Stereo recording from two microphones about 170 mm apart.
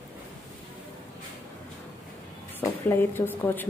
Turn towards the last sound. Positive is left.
turn(degrees=10)  # may be behind; listen again after turning